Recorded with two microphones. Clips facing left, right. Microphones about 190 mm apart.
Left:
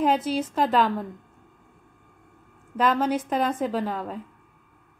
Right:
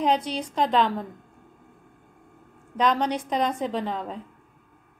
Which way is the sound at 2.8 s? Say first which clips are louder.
Left 1 dB; 5° left (ahead or behind).